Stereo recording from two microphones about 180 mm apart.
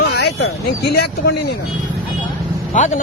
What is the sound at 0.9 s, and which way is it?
Speech, 65° left (ahead or behind).